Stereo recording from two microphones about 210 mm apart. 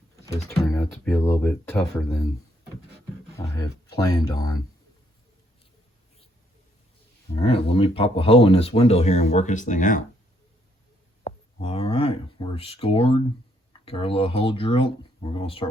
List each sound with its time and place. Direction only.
0.3 s speech: 15° left (ahead or behind)
3.3 s speech: 15° left (ahead or behind)
7.3 s speech: 25° left (ahead or behind)
11.2 s speech: 30° left (ahead or behind)